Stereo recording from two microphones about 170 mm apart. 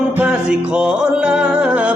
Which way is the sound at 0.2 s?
5° right (ahead or behind).